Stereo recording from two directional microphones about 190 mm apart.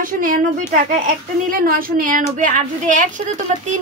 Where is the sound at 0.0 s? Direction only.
45° right (ahead or behind).